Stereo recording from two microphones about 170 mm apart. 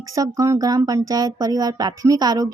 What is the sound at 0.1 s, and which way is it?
Speech, 20° right (ahead or behind).